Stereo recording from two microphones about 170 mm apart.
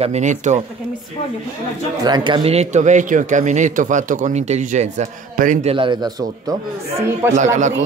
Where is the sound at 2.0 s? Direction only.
25° right (ahead or behind); by 5.7 s 45° right (ahead or behind).